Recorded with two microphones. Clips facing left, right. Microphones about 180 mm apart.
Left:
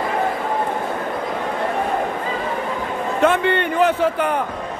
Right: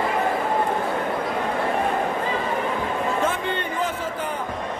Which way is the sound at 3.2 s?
70° left (ahead or behind).